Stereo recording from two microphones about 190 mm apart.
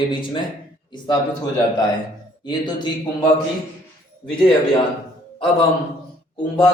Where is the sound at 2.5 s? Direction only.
20° left (ahead or behind).